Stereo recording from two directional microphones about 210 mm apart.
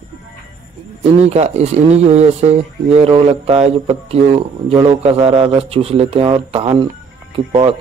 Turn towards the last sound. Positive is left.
turn(degrees=-25)  # may be behind; listen again after turning